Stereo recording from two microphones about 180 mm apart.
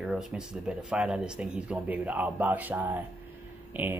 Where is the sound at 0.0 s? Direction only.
5° right (ahead or behind).